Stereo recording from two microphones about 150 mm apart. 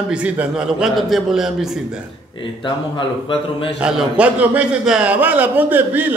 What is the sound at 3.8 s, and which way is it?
A man's voice, 10° right (ahead or behind).